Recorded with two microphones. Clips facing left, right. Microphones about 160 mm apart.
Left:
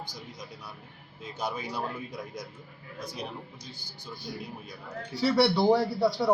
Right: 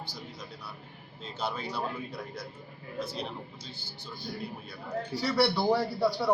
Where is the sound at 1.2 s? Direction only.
15° left (ahead or behind).